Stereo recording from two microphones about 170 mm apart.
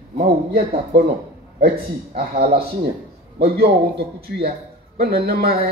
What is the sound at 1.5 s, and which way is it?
A man's voice, 60° right (ahead or behind).